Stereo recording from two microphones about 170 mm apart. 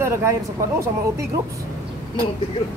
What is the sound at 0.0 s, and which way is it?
Speech, 15° right (ahead or behind).